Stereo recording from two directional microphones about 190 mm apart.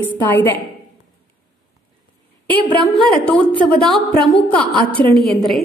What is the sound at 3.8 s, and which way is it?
Speech, 5° left (ahead or behind).